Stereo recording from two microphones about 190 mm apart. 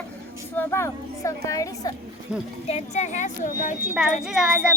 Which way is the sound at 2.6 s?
35° left (ahead or behind).